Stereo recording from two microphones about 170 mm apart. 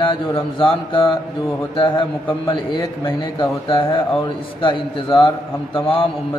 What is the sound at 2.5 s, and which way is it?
Speech, 30° left (ahead or behind).